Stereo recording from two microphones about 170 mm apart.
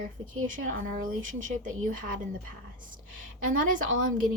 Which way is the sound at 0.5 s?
50° right (ahead or behind).